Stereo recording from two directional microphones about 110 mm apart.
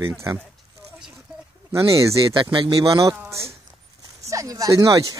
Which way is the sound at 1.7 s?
30° right (ahead or behind).